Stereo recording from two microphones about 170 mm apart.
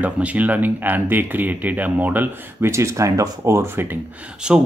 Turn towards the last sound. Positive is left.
turn(degrees=-5)  # may be behind; listen again after turning